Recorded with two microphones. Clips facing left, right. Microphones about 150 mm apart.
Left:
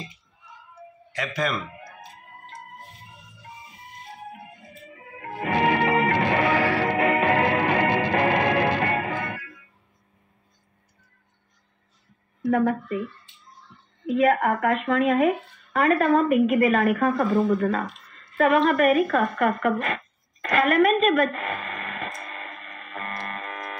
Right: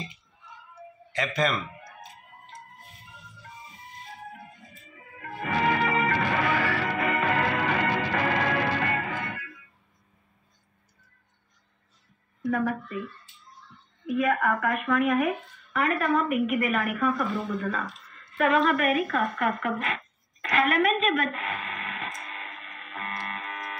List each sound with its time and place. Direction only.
1.1 s speech: 5° left (ahead or behind)
5.2 s music: 25° left (ahead or behind)
12.5 s speech: 25° left (ahead or behind)
14.4 s a woman's voice: 30° left (ahead or behind)
20.4 s a sound: 40° left (ahead or behind)